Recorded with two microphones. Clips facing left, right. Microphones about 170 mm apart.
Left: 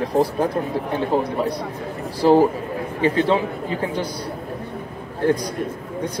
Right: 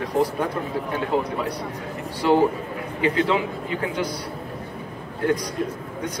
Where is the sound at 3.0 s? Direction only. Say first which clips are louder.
Left 3 dB; 30° left (ahead or behind).